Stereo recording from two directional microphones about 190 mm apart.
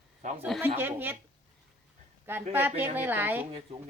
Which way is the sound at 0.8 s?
10° right (ahead or behind).